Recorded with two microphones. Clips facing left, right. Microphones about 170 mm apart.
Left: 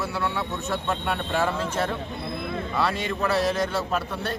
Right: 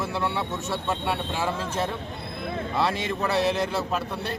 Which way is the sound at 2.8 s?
20° right (ahead or behind).